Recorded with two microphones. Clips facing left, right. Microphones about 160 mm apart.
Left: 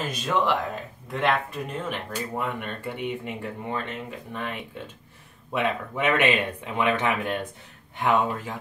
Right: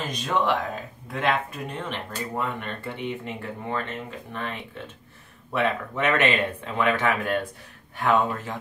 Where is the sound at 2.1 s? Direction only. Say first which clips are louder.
Even; 15° left (ahead or behind).